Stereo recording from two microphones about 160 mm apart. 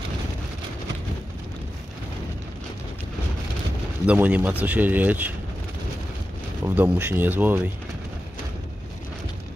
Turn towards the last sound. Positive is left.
turn(degrees=-10)  # may be behind; listen again after turning